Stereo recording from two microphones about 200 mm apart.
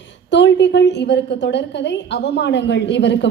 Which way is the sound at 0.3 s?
60° left (ahead or behind).